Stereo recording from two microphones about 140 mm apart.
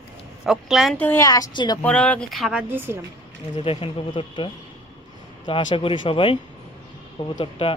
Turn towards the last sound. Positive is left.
turn(degrees=40)  # may be behind; listen again after turning